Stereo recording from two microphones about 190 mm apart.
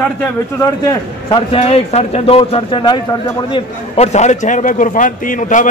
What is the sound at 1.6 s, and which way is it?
Speech, 35° left (ahead or behind).